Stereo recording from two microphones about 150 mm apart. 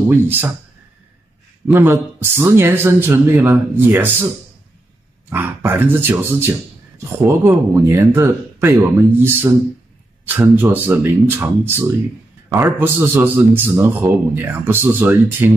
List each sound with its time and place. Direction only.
0.1 s a man's voice: 15° right (ahead or behind)
1.7 s a man's voice: 15° right (ahead or behind)
5.3 s a man's voice: 15° right (ahead or behind)